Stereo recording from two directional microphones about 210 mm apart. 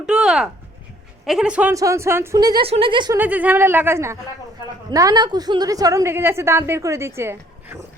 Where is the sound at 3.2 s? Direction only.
10° right (ahead or behind).